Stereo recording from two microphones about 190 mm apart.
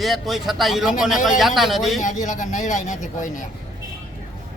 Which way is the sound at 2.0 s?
40° left (ahead or behind).